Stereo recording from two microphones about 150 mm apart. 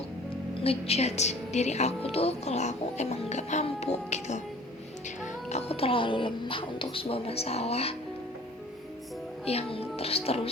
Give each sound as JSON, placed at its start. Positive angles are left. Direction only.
{"t": 0.6, "sound": "a woman's voice", "side_deg": 40}
{"t": 9.5, "sound": "speech", "side_deg": 40}